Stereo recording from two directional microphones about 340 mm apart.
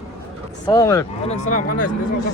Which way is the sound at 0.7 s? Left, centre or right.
Centre.